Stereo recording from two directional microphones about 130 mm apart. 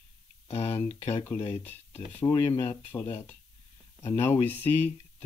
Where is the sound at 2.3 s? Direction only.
25° left (ahead or behind).